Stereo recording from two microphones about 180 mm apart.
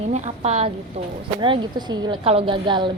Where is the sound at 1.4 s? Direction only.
25° right (ahead or behind).